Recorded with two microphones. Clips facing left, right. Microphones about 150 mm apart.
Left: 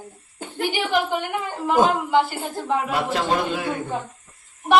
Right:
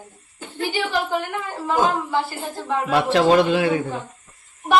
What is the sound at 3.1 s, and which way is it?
Speech, 90° right.